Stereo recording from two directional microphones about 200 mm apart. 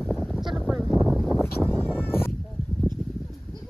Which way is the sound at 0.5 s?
5° right (ahead or behind).